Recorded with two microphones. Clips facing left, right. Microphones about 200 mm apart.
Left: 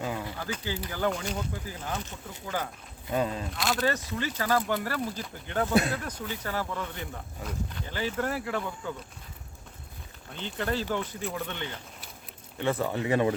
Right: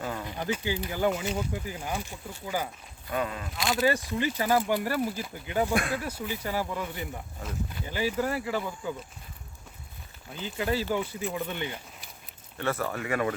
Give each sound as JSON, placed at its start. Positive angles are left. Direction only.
{"t": 0.0, "sound": "a sound", "side_deg": 15}
{"t": 0.3, "sound": "a sound", "side_deg": -20}
{"t": 0.5, "sound": "speech", "side_deg": -15}
{"t": 3.1, "sound": "speech", "side_deg": 30}
{"t": 3.5, "sound": "speech", "side_deg": 0}
{"t": 3.8, "sound": "speech", "side_deg": -15}
{"t": 10.3, "sound": "speech", "side_deg": -5}
{"t": 12.5, "sound": "speech", "side_deg": 15}